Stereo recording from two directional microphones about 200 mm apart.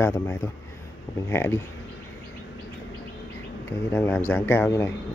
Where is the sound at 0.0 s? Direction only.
15° left (ahead or behind).